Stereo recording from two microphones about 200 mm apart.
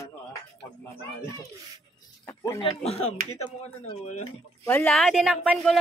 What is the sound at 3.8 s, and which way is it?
Speech, 35° left (ahead or behind).